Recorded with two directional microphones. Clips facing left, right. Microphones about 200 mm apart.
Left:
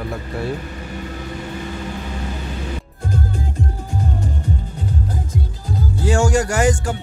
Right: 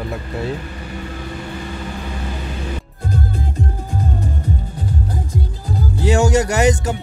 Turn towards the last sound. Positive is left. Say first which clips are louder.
# right 2 dB
turn(degrees=-20)  # may be behind; listen again after turning